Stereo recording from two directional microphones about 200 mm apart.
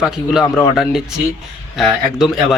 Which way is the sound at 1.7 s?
Centre (ahead or behind).